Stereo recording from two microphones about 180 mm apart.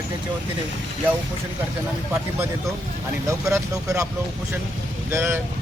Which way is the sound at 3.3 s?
15° right (ahead or behind).